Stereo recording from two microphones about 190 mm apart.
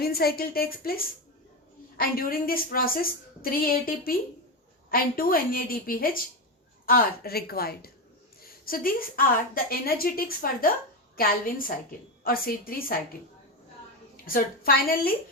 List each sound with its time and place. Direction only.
0.0 s a woman's voice: 55° left (ahead or behind)
14.3 s a woman's voice: 50° left (ahead or behind)